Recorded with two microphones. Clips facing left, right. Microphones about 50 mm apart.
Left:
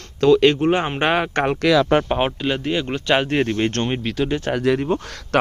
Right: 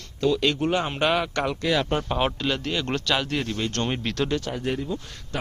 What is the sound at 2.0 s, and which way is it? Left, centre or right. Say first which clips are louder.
Speech: left 4 dB; left.